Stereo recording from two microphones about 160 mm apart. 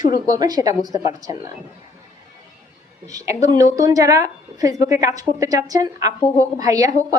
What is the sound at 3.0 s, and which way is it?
A woman's voice, 20° right (ahead or behind).